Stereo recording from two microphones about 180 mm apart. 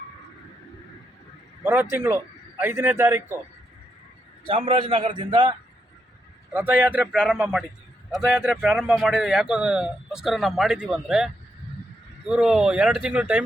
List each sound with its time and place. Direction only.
1.6 s a man's voice: 10° right (ahead or behind)
4.4 s a man's voice: 30° right (ahead or behind)
6.5 s a man's voice: 10° right (ahead or behind)
12.3 s speech: 5° right (ahead or behind)